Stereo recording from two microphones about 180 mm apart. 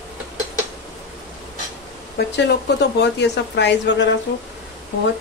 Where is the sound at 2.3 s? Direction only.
70° left (ahead or behind).